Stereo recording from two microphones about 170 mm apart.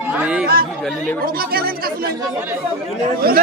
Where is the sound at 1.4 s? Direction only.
60° right (ahead or behind).